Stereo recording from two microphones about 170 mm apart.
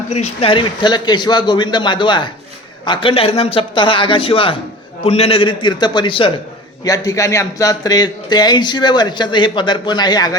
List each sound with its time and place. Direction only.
0.1 s a man's voice: 35° left (ahead or behind)
6.8 s a man's voice: 20° left (ahead or behind)